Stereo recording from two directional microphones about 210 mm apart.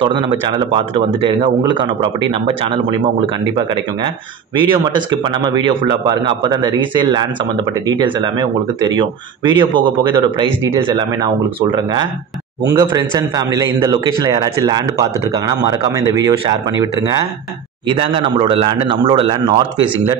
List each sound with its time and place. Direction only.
0.0 s a man's voice: 25° right (ahead or behind)
17.8 s a man's voice: 25° right (ahead or behind)